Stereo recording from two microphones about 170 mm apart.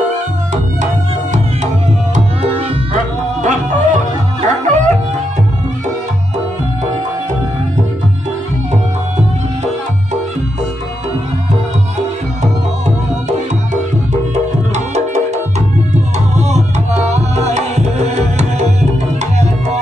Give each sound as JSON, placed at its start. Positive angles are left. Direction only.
{"t": 2.1, "sound": "tabla", "side_deg": -40}
{"t": 3.4, "sound": "music", "side_deg": -45}
{"t": 16.3, "sound": "tabla", "side_deg": -40}